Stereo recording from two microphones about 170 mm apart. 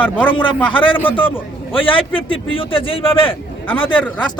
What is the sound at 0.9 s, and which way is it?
Speech, 10° left (ahead or behind).